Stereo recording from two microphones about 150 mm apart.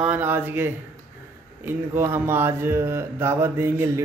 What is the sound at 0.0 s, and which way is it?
Speech, 10° right (ahead or behind).